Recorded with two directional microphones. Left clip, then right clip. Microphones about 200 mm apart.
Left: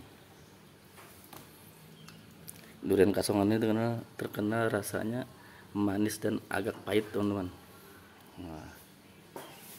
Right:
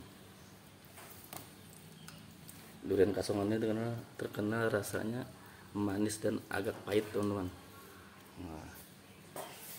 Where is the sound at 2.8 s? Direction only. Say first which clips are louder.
Left 4 dB; 40° left (ahead or behind); by 7.5 s 25° left (ahead or behind).